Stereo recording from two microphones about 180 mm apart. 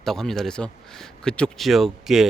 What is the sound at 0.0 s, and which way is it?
Speech, centre (ahead or behind).